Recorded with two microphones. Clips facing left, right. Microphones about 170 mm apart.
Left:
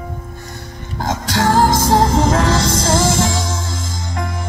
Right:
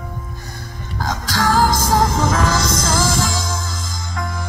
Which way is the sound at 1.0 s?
25° left (ahead or behind).